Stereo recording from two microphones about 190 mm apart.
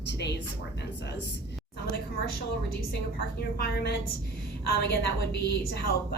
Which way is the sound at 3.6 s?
55° left (ahead or behind).